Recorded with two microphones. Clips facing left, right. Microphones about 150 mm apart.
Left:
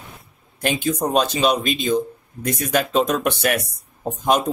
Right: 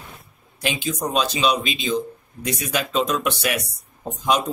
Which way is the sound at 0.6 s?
55° left (ahead or behind).